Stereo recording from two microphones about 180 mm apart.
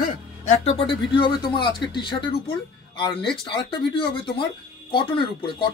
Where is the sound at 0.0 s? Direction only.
35° left (ahead or behind).